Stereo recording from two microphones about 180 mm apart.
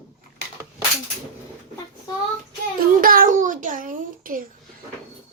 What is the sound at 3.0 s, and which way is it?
A child's voice, 55° right (ahead or behind).